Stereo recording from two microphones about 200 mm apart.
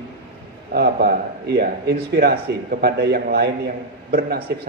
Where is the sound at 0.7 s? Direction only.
50° right (ahead or behind).